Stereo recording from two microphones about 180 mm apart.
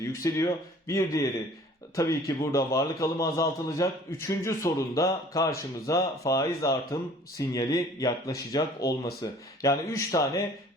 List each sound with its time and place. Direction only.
0.0 s a man's voice: 15° left (ahead or behind)